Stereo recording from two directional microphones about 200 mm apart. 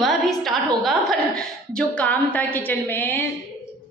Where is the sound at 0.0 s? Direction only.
Centre (ahead or behind).